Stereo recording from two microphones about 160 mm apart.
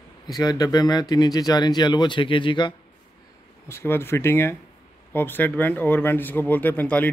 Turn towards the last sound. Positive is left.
turn(degrees=10)  # may be behind; listen again after turning